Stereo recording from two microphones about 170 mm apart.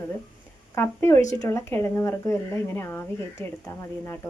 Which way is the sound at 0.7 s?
15° left (ahead or behind).